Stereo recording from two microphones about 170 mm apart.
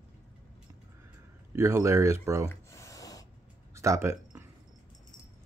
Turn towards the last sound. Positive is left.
turn(degrees=-15)  # may be behind; listen again after turning